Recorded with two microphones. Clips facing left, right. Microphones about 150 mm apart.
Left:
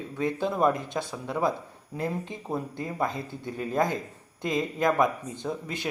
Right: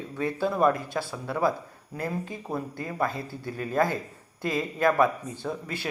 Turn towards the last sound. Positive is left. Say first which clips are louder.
# even
turn(degrees=15)  # may be behind; listen again after turning